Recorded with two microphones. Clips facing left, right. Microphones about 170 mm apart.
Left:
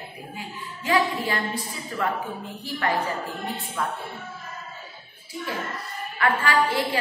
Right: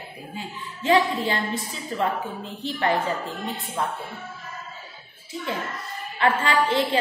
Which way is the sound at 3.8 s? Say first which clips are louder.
Right 2 dB; 25° right (ahead or behind).